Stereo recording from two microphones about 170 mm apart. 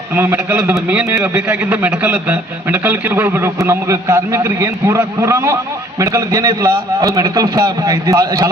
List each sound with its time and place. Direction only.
0.2 s a man's voice: 10° right (ahead or behind)